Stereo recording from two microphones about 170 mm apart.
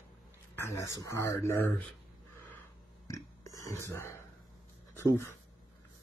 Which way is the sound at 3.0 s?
20° left (ahead or behind).